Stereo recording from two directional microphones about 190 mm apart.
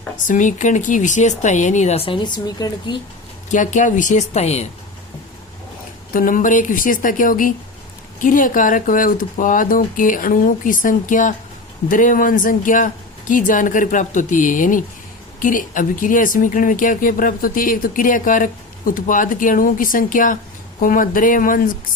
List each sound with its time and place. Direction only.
0.3 s speech: 40° left (ahead or behind); by 3.0 s 20° left (ahead or behind)
3.5 s speech: 40° left (ahead or behind)
6.1 s speech: 45° left (ahead or behind)